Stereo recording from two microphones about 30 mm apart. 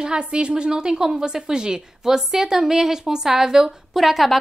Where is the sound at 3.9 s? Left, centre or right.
Centre.